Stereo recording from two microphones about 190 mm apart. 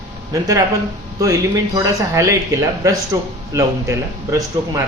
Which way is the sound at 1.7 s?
15° right (ahead or behind).